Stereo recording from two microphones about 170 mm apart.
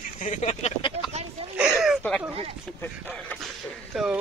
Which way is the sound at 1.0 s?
35° right (ahead or behind).